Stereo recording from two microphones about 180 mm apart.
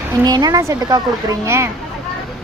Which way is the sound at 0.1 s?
20° right (ahead or behind).